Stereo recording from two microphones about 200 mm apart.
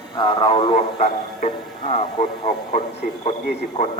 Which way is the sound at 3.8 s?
35° left (ahead or behind).